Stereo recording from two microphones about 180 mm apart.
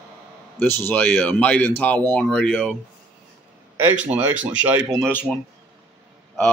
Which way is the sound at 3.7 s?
10° right (ahead or behind).